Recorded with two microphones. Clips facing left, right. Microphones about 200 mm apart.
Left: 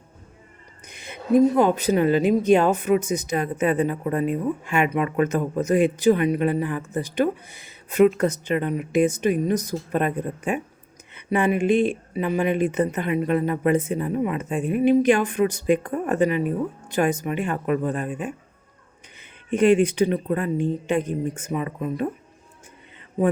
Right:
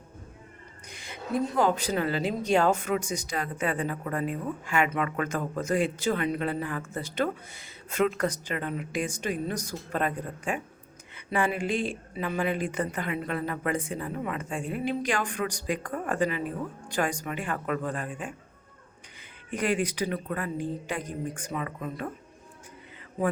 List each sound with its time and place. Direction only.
0.9 s a woman's voice: 20° left (ahead or behind)
19.5 s a woman's voice: 25° left (ahead or behind)